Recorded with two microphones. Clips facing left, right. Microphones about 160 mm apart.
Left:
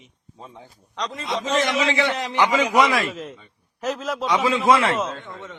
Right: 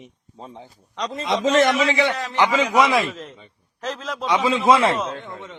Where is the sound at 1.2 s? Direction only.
90° right.